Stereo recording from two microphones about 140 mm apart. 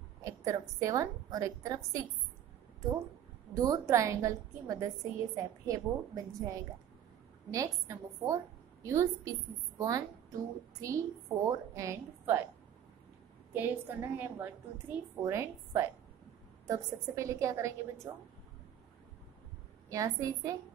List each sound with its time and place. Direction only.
0.2 s a woman's voice: 25° right (ahead or behind)
3.5 s a woman's voice: 25° right (ahead or behind)
13.5 s a woman's voice: 15° right (ahead or behind)
19.9 s a woman's voice: 25° right (ahead or behind)